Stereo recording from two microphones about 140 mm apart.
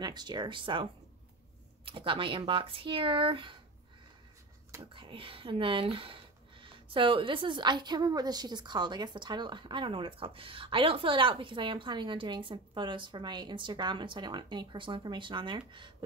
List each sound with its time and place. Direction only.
0.0 s speech: 30° right (ahead or behind)
1.9 s speech: 40° right (ahead or behind)
4.9 s speech: 40° right (ahead or behind)